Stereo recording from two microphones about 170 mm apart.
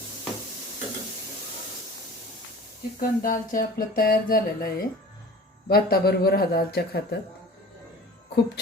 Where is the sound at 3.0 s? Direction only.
55° left (ahead or behind).